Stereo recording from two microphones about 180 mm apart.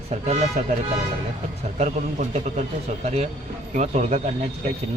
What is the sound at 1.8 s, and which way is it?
A man's voice, 40° right (ahead or behind).